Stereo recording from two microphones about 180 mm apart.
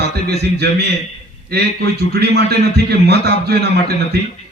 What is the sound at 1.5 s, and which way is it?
A man's voice, 65° right (ahead or behind).